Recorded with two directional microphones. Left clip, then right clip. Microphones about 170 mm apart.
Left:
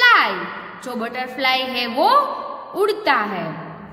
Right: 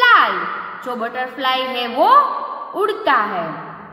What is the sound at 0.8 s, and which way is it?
A woman's voice, 35° left (ahead or behind).